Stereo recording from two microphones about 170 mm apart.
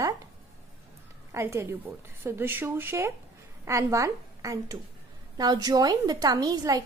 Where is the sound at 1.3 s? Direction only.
15° right (ahead or behind).